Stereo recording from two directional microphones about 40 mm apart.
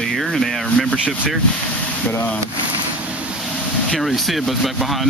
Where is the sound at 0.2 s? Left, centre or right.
Centre.